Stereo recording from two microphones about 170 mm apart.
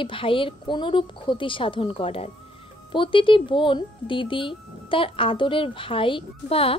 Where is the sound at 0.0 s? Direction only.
30° left (ahead or behind).